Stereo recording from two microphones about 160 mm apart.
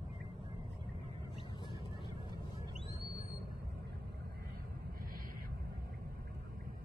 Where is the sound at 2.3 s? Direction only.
25° right (ahead or behind).